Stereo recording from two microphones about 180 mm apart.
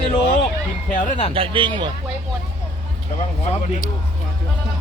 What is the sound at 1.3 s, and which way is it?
Speech, 30° right (ahead or behind).